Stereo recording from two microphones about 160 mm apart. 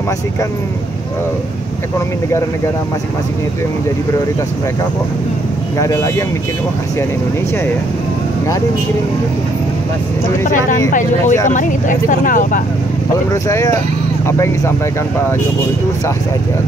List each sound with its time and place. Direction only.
5.8 s speech: 20° left (ahead or behind)
10.9 s speech: 55° left (ahead or behind)
13.3 s speech: 20° left (ahead or behind)